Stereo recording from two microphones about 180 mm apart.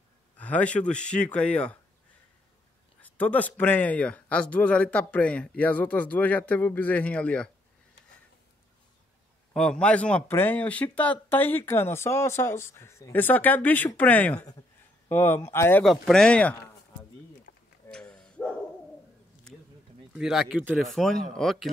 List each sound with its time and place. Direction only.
0.4 s speech: 10° left (ahead or behind)
3.0 s speech: 10° left (ahead or behind)
9.5 s speech: 5° left (ahead or behind)
15.8 s speech: centre (ahead or behind)
17.5 s a sound: 60° left (ahead or behind)
17.8 s a sound: 5° left (ahead or behind)
20.2 s speech: 5° right (ahead or behind)
20.9 s speech: centre (ahead or behind)